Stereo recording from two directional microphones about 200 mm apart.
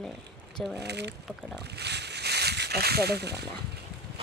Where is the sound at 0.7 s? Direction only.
55° right (ahead or behind).